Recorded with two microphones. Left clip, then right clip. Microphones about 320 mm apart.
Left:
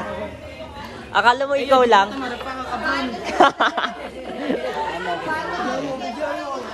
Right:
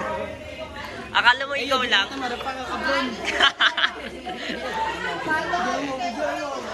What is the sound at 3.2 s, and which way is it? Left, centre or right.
Speech, centre.